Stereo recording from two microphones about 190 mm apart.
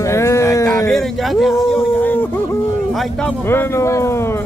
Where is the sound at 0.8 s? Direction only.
Centre (ahead or behind).